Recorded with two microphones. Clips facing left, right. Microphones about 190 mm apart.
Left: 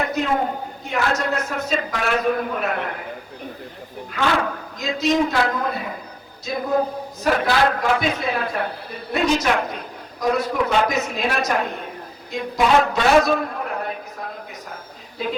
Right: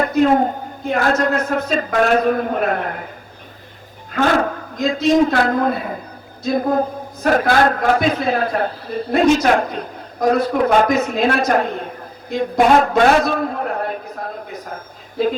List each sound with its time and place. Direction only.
0.0 s a woman's voice: 45° right (ahead or behind)
4.1 s a man's voice: 45° right (ahead or behind)